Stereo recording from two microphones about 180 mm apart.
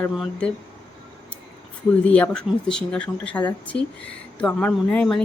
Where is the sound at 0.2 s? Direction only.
5° left (ahead or behind).